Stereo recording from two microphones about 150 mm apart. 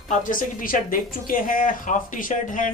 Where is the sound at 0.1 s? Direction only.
60° left (ahead or behind).